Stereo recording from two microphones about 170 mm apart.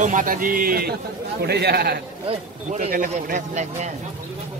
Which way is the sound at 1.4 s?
70° right (ahead or behind).